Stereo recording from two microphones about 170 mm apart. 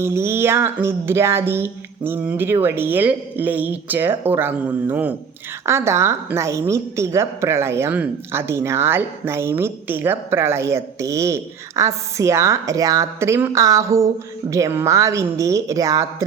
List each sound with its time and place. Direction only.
0.0 s a woman's voice: 15° right (ahead or behind)